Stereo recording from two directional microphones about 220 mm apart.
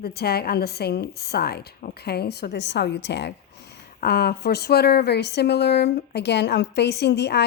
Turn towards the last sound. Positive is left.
turn(degrees=50)  # may be behind; listen again after turning